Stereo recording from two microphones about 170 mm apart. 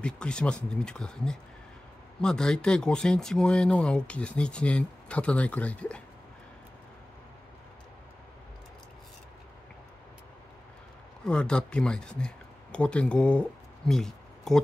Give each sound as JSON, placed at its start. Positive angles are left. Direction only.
{"t": 0.0, "sound": "speech", "side_deg": 5}
{"t": 11.2, "sound": "speech", "side_deg": 5}